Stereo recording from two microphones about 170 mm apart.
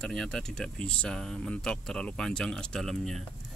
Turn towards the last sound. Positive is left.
turn(degrees=0)  # may be behind; listen again after turning